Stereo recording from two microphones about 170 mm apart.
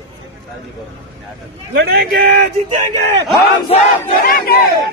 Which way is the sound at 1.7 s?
65° right (ahead or behind).